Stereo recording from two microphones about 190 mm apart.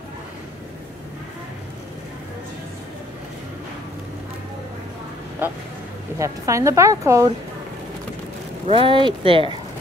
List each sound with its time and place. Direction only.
6.1 s a woman's voice: 15° right (ahead or behind)
8.6 s speech: 25° right (ahead or behind)